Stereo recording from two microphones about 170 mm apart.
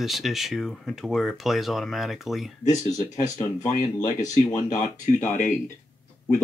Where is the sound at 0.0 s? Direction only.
Centre (ahead or behind).